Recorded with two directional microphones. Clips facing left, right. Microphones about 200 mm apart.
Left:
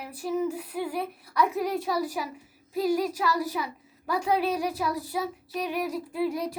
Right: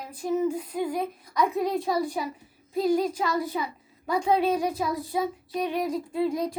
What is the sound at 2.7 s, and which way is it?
Speech, 10° left (ahead or behind).